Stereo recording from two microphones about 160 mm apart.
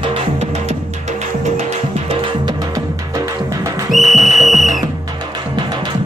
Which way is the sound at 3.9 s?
Centre (ahead or behind).